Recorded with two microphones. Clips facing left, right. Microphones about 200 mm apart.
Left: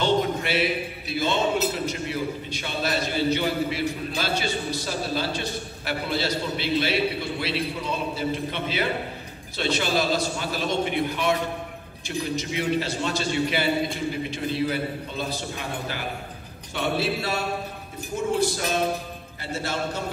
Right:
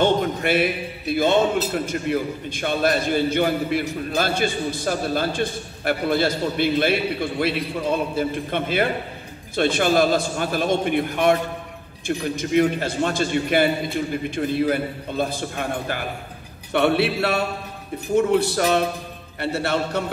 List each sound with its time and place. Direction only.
0.0 s a man's voice: 50° right (ahead or behind)
16.7 s speech: 65° right (ahead or behind)